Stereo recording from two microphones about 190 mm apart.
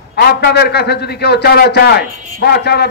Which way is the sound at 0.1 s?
60° left (ahead or behind).